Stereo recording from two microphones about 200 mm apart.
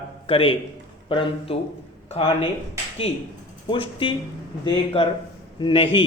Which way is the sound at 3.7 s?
25° left (ahead or behind).